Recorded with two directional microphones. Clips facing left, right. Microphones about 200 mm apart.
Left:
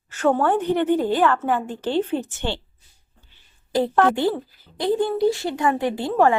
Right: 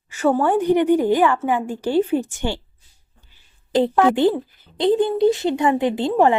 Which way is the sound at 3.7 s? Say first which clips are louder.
Right 2 dB; 20° right (ahead or behind).